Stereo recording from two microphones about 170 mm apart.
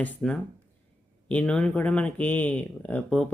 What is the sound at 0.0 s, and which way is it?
Speech, 5° left (ahead or behind).